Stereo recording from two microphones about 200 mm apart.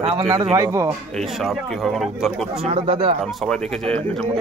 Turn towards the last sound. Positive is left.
turn(degrees=5)  # may be behind; listen again after turning